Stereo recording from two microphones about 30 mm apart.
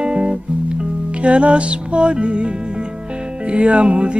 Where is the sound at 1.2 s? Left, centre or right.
Right.